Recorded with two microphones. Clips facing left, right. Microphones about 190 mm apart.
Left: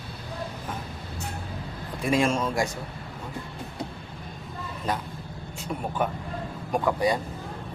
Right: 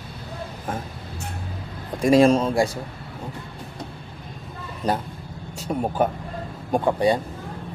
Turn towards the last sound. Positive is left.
turn(degrees=-30)  # may be behind; listen again after turning